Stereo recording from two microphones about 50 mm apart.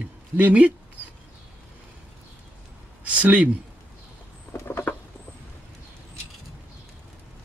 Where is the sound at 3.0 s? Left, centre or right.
Right.